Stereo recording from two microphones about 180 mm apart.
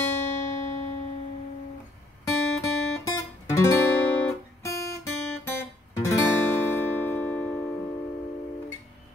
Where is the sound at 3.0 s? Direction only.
15° left (ahead or behind).